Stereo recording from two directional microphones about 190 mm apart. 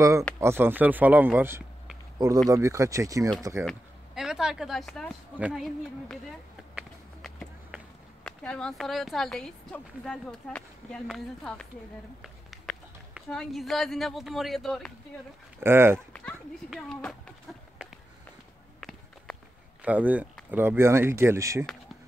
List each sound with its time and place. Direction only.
0.4 s speech: 10° right (ahead or behind)
3.6 s speech: centre (ahead or behind)
15.6 s speech: 10° right (ahead or behind)
16.1 s a child's voice: 5° left (ahead or behind)
17.8 s a sound: 5° right (ahead or behind)
18.8 s walk: centre (ahead or behind)
19.8 s speech: 10° right (ahead or behind)